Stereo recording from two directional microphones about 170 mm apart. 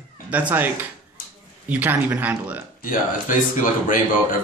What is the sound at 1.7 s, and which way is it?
Speech, 10° right (ahead or behind).